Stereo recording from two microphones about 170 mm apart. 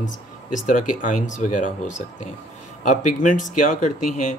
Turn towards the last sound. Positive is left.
turn(degrees=50)  # may be behind; listen again after turning